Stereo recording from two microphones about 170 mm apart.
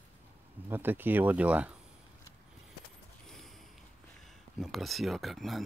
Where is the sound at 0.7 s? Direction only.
10° right (ahead or behind).